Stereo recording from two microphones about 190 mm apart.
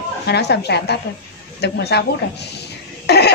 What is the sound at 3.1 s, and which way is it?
Cough, 60° left (ahead or behind).